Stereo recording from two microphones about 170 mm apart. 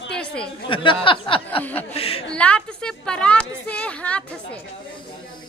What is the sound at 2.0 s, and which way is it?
Speech, 35° left (ahead or behind).